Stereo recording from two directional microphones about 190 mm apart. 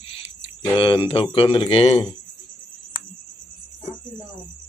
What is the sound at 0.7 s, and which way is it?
A man's voice, 30° left (ahead or behind).